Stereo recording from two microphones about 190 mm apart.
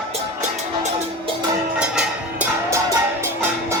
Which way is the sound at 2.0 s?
10° right (ahead or behind).